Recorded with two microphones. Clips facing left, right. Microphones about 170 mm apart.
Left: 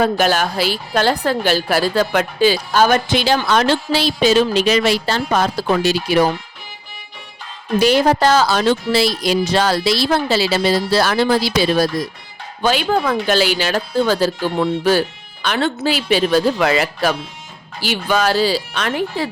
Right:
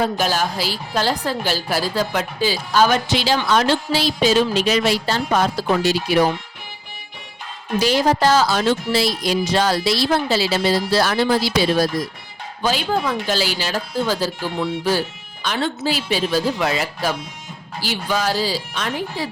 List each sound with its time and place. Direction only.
0.0 s a woman's voice: 65° left (ahead or behind)
2.8 s speech: 50° left (ahead or behind); by 5.4 s 85° left
7.8 s speech: 60° left (ahead or behind)